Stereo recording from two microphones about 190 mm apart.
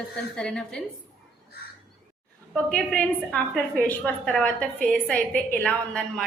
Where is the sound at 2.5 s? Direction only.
5° left (ahead or behind).